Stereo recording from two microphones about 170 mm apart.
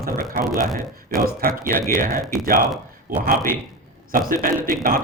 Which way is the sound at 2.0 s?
55° right (ahead or behind).